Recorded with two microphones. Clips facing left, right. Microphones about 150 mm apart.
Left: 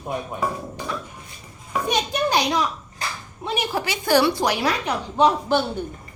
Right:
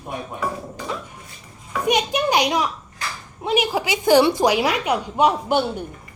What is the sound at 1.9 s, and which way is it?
A woman's voice, 15° right (ahead or behind).